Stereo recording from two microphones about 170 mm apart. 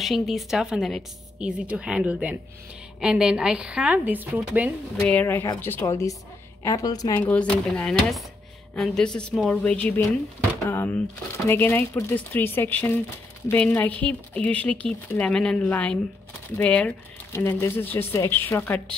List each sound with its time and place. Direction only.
0.0 s a woman's voice: centre (ahead or behind)
5.0 s speech: 10° left (ahead or behind)
7.2 s a woman's voice: 10° left (ahead or behind)